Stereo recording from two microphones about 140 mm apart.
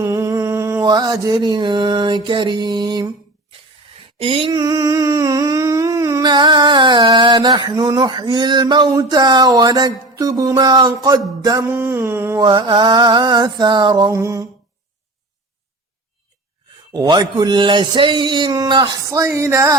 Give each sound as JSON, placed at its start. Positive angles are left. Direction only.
{"t": 0.0, "sound": "mantra", "side_deg": -20}
{"t": 4.2, "sound": "humming", "side_deg": -40}
{"t": 10.2, "sound": "music", "side_deg": -25}
{"t": 11.4, "sound": "mantra", "side_deg": -20}
{"t": 12.5, "sound": "mantra", "side_deg": -35}
{"t": 16.9, "sound": "mantra", "side_deg": -30}
{"t": 19.1, "sound": "music", "side_deg": -20}